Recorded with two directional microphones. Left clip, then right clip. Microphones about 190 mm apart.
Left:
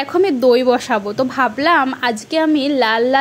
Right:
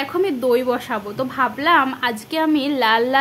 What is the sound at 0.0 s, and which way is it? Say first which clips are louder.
A woman's voice: left 6 dB; 25° left (ahead or behind).